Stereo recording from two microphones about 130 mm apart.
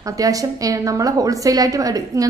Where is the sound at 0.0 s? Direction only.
25° right (ahead or behind).